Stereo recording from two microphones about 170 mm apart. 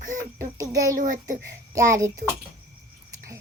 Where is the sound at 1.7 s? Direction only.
20° right (ahead or behind).